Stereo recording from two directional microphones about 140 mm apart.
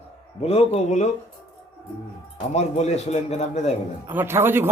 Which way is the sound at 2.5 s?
55° left (ahead or behind).